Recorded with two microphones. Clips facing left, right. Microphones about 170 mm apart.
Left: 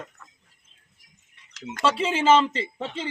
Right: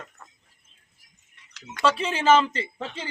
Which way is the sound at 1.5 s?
45° left (ahead or behind).